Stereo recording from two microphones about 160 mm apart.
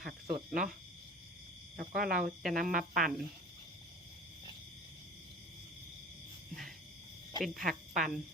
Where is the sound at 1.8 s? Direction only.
70° right (ahead or behind).